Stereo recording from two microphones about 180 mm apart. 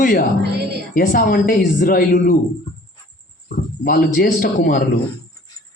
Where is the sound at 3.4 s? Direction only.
50° left (ahead or behind).